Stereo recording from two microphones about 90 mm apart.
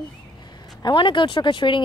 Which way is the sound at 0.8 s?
65° left (ahead or behind).